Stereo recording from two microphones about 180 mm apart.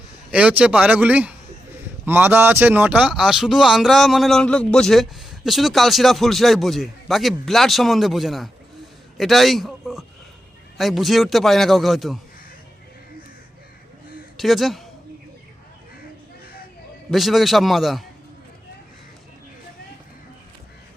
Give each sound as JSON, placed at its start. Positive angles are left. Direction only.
{"t": 0.3, "sound": "a man's voice", "side_deg": -5}
{"t": 14.3, "sound": "a man's voice", "side_deg": 0}
{"t": 17.1, "sound": "a man's voice", "side_deg": 0}